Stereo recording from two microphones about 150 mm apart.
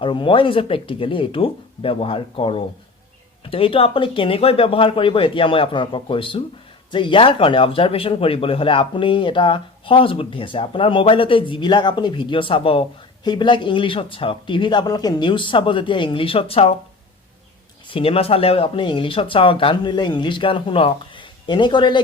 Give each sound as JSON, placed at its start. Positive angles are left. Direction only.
{"t": 0.0, "sound": "speech", "side_deg": 35}
{"t": 17.8, "sound": "speech", "side_deg": 40}